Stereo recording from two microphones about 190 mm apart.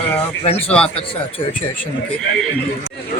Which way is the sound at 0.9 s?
30° left (ahead or behind).